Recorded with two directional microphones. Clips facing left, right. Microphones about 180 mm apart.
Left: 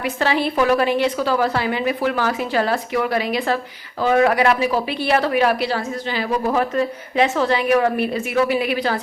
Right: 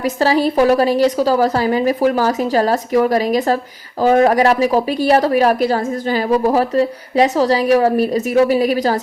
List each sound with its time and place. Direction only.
0.0 s a woman's voice: 40° right (ahead or behind)